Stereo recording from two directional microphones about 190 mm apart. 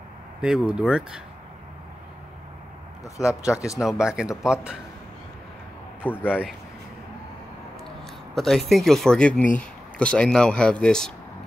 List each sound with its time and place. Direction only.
0.4 s speech: 5° right (ahead or behind)
3.5 s speech: 15° left (ahead or behind)
3.8 s speech: 5° right (ahead or behind)
6.1 s speech: 5° right (ahead or behind)
8.4 s speech: centre (ahead or behind)